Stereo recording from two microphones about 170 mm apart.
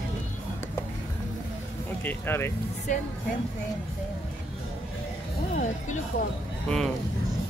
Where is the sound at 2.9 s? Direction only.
45° left (ahead or behind).